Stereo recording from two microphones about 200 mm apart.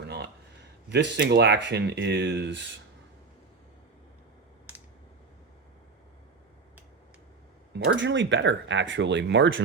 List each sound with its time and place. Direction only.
0.9 s speech: 60° right (ahead or behind)
7.7 s speech: 60° right (ahead or behind)